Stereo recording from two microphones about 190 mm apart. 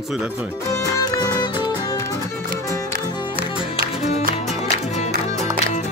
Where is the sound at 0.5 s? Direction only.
15° left (ahead or behind).